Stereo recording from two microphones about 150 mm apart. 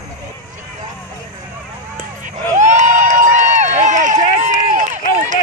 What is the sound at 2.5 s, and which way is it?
Run, 55° right (ahead or behind).